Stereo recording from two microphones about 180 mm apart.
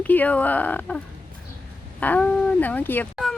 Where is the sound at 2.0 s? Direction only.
10° left (ahead or behind).